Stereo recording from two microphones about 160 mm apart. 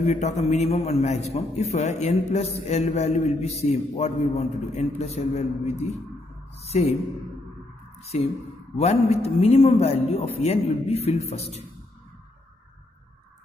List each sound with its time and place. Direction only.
0.0 s a man's voice: 45° left (ahead or behind)
8.1 s a man's voice: 40° left (ahead or behind)